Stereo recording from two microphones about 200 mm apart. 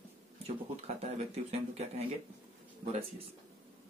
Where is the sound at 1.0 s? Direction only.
35° right (ahead or behind).